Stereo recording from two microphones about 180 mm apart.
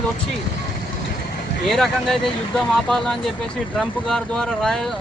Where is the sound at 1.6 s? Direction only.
Centre (ahead or behind).